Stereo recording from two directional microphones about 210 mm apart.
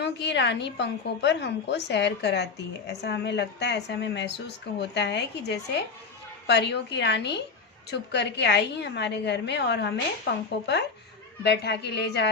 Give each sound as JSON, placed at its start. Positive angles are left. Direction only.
{"t": 0.0, "sound": "a woman's voice", "side_deg": 55}
{"t": 11.4, "sound": "a woman's voice", "side_deg": 50}